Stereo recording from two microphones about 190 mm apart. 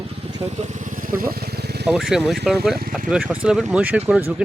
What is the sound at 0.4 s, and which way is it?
Speech, 35° right (ahead or behind).